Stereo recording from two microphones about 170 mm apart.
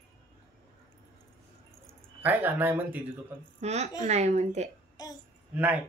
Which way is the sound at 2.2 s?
10° right (ahead or behind).